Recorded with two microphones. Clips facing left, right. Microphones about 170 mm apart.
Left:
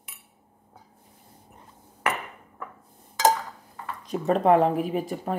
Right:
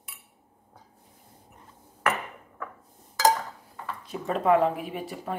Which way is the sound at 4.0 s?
40° left (ahead or behind).